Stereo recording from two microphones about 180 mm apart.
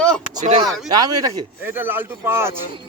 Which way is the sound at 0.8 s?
20° right (ahead or behind).